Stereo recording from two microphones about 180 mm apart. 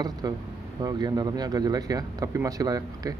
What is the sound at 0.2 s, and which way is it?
Speech, 20° right (ahead or behind).